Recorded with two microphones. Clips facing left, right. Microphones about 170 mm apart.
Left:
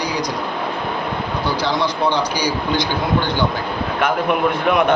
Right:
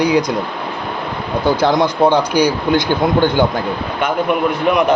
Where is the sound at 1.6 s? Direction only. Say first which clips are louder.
Right 7 dB; 50° right (ahead or behind).